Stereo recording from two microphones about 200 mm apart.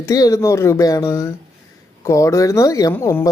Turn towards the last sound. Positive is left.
turn(degrees=15)  # may be behind; listen again after turning